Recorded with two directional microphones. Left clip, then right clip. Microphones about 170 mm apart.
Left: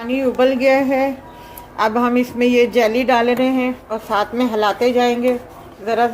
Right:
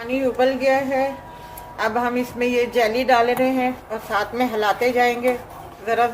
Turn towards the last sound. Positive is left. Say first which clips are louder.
# left 2 dB
turn(degrees=35)  # may be behind; listen again after turning